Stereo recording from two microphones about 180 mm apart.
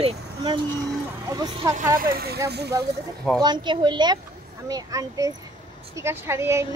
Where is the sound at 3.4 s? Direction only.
25° right (ahead or behind).